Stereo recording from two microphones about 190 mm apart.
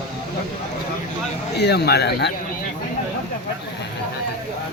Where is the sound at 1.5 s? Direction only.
60° left (ahead or behind).